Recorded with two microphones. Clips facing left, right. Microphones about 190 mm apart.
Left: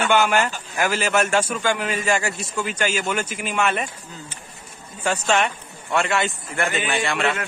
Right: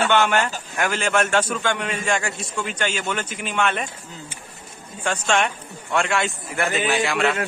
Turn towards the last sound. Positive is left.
turn(degrees=0)  # may be behind; listen again after turning